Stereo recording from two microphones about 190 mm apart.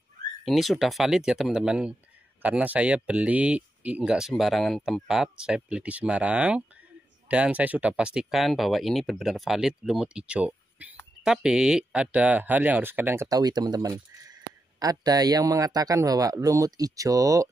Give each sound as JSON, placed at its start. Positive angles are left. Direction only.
{"t": 0.5, "sound": "speech", "side_deg": 0}